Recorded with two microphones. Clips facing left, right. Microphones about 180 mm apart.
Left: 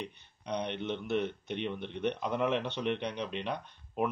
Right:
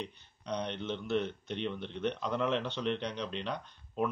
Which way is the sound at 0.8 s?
55° left (ahead or behind).